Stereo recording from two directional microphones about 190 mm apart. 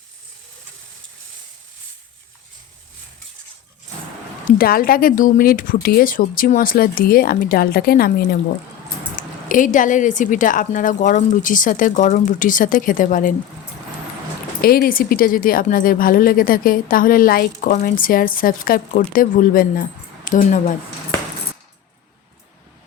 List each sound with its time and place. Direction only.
4.5 s speech: 50° left (ahead or behind)
14.6 s speech: 50° left (ahead or behind)